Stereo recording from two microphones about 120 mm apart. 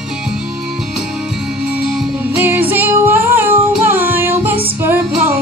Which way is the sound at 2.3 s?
15° right (ahead or behind).